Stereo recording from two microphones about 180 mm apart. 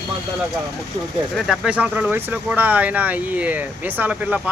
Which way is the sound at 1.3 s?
Centre (ahead or behind).